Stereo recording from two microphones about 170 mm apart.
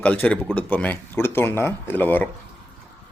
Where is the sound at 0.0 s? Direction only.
10° left (ahead or behind).